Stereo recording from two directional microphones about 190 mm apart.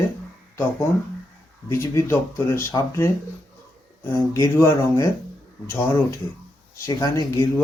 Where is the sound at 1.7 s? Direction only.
15° left (ahead or behind).